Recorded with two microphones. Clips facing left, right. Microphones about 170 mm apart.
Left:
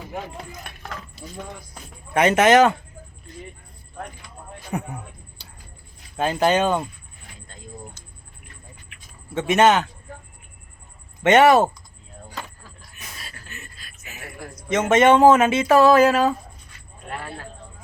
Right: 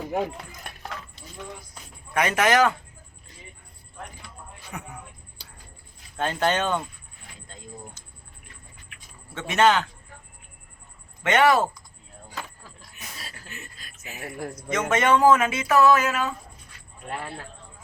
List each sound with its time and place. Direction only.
2.1 s speech: 25° left (ahead or behind)
4.7 s speech: 35° left (ahead or behind)
6.1 s speech: 10° left (ahead or behind)
9.3 s speech: 20° left (ahead or behind)
11.2 s speech: 25° left (ahead or behind)
13.7 s a sound: 40° right (ahead or behind)
14.7 s speech: 25° left (ahead or behind)